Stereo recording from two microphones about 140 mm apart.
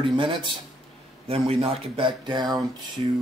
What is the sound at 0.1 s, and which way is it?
Speech, 35° right (ahead or behind).